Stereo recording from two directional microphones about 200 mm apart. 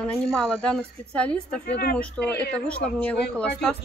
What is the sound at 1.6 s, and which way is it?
Speech, 55° left (ahead or behind).